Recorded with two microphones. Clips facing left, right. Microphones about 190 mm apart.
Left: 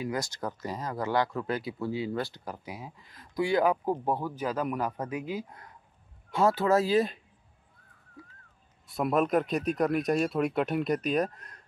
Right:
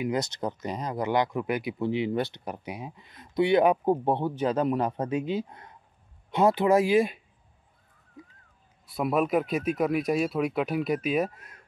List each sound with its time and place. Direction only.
0.0 s speech: 20° right (ahead or behind)
8.2 s a sound: 20° right (ahead or behind)
8.8 s speech: centre (ahead or behind)